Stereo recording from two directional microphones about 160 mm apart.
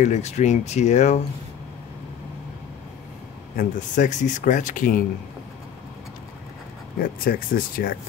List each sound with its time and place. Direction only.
0.0 s speech: 45° left (ahead or behind)
3.5 s speech: 50° left (ahead or behind)
7.0 s speech: 65° left (ahead or behind)